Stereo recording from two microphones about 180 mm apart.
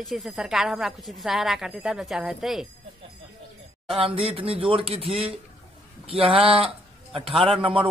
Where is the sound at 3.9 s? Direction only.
30° right (ahead or behind).